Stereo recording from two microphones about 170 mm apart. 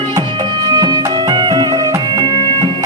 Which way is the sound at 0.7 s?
25° right (ahead or behind).